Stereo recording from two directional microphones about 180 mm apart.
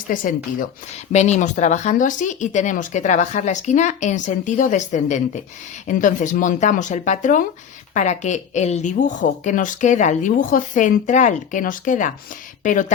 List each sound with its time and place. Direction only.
0.1 s a woman's voice: 50° left (ahead or behind)